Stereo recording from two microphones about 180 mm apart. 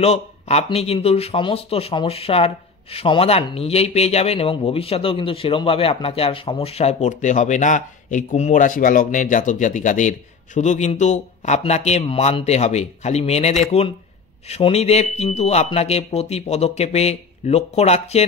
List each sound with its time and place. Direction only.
0.0 s speech: 35° left (ahead or behind)